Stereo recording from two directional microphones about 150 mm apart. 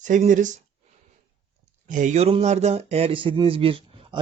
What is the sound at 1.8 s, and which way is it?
Speech, 55° right (ahead or behind).